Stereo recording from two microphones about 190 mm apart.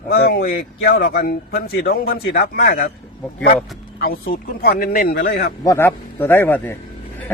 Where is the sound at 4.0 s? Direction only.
50° left (ahead or behind).